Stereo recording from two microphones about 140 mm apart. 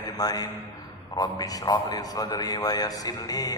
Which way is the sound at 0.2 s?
25° left (ahead or behind).